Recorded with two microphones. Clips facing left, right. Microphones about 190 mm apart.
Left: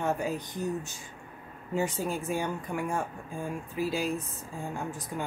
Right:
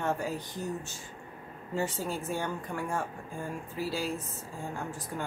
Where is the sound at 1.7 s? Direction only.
15° left (ahead or behind).